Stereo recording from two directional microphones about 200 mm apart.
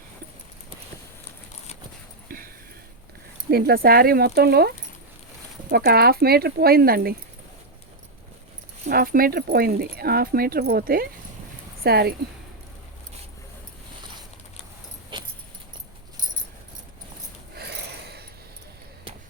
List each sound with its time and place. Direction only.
3.5 s speech: 50° right (ahead or behind)
5.7 s speech: 50° right (ahead or behind)
8.9 s speech: 45° right (ahead or behind)
15.1 s keys jangling: 25° right (ahead or behind)
17.5 s a sound: 55° right (ahead or behind)